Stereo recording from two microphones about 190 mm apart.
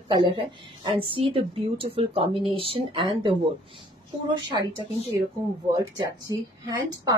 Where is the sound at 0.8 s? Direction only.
25° right (ahead or behind).